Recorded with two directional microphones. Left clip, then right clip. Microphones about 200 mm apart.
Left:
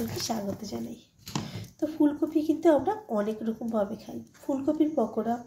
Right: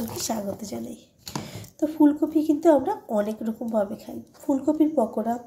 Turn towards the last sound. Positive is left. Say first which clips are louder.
# right 4 dB
turn(degrees=-15)  # may be behind; listen again after turning